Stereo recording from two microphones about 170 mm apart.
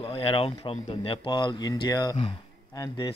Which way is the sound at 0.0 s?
35° left (ahead or behind).